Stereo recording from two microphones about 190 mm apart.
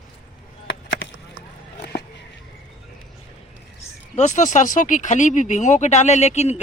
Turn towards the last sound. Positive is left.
turn(degrees=35)  # may be behind; listen again after turning